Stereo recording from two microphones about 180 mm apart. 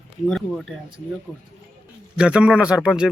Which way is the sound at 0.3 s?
Centre (ahead or behind).